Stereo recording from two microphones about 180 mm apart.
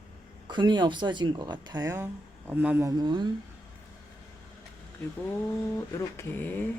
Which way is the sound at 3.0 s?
25° right (ahead or behind).